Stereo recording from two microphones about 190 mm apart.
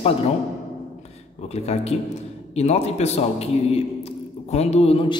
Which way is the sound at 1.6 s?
35° left (ahead or behind).